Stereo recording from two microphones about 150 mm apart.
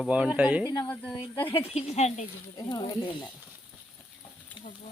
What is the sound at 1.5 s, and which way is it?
Speech, 40° left (ahead or behind).